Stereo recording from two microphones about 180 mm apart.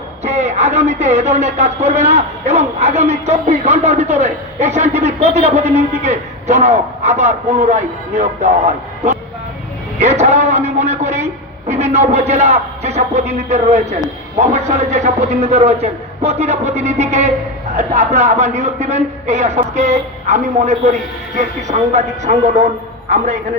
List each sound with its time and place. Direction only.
0.2 s speech: 40° right (ahead or behind)